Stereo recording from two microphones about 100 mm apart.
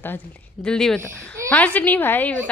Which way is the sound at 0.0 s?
20° left (ahead or behind).